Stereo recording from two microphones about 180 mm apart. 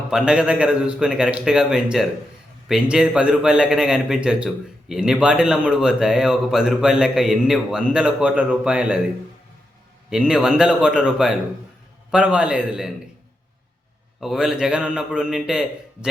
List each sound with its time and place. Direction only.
0.1 s a man's voice: 5° right (ahead or behind)
10.1 s a man's voice: 5° right (ahead or behind)
14.2 s a man's voice: centre (ahead or behind)